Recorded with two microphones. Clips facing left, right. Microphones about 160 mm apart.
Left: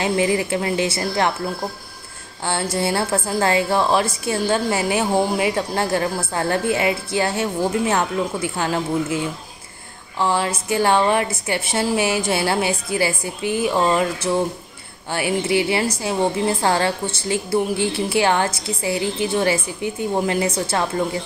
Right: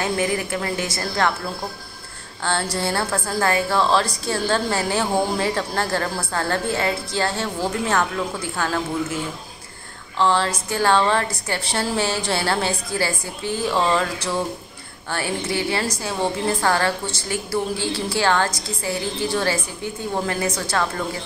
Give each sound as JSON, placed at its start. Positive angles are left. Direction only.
{"t": 0.0, "sound": "a woman's voice", "side_deg": 20}
{"t": 2.4, "sound": "a woman's voice", "side_deg": 20}